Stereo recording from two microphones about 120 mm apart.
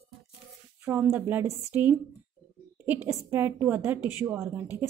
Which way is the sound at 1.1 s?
15° right (ahead or behind).